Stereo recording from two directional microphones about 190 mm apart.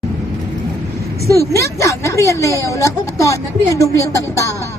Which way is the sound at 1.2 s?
15° right (ahead or behind).